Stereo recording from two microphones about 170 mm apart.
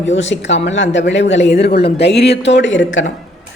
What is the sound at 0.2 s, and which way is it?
A woman's voice, 90° left.